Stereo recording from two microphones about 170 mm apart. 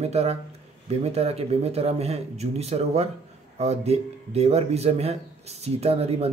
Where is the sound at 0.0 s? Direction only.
40° right (ahead or behind).